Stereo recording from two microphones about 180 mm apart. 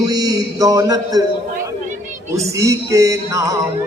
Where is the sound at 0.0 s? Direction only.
20° right (ahead or behind).